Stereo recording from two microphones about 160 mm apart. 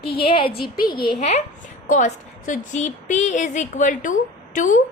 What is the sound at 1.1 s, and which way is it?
A woman's voice, 45° left (ahead or behind).